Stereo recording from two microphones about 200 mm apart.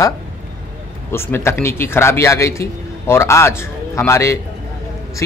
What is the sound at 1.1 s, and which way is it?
A man's voice, 10° left (ahead or behind).